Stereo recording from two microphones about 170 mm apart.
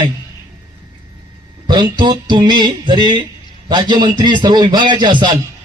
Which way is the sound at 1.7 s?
25° right (ahead or behind).